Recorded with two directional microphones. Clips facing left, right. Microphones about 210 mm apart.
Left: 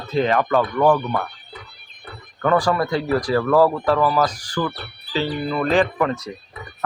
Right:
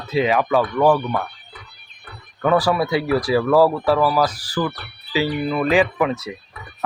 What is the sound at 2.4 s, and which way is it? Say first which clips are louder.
Speech: right 1 dB; 5° right (ahead or behind).